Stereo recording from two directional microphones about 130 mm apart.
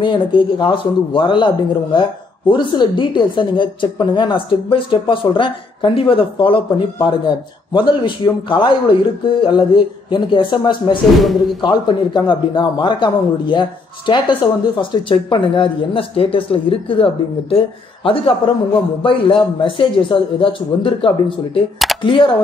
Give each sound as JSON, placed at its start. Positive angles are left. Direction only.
{"t": 0.0, "sound": "speech", "side_deg": 40}